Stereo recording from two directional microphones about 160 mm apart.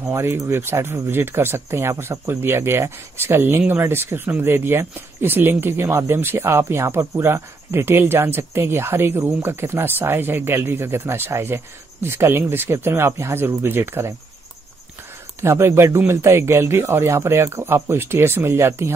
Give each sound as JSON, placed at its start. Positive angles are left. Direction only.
{"t": 0.0, "sound": "speech", "side_deg": -15}
{"t": 15.4, "sound": "speech", "side_deg": -15}